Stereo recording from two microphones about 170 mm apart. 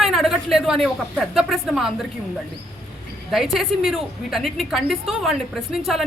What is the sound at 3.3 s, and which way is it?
A woman's voice, centre (ahead or behind).